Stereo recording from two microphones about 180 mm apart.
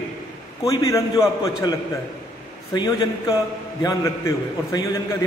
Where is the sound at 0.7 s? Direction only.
15° left (ahead or behind).